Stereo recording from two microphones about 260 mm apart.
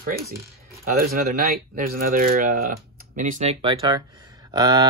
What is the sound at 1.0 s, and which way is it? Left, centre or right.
Speech, right.